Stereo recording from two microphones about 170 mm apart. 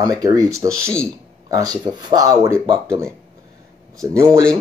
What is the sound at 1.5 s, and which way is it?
Speech, 25° right (ahead or behind).